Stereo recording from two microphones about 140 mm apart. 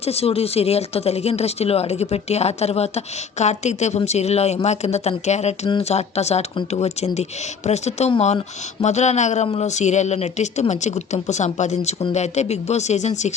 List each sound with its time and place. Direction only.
0.0 s a woman's voice: 45° left (ahead or behind)